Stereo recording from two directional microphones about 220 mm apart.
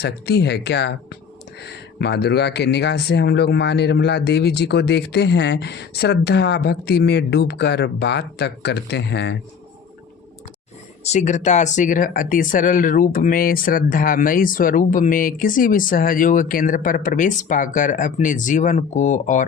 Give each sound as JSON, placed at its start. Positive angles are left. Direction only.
{"t": 0.0, "sound": "speech", "side_deg": 50}
{"t": 11.0, "sound": "speech", "side_deg": 30}